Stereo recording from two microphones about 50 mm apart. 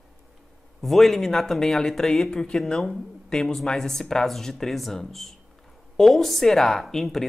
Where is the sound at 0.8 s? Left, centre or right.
Centre.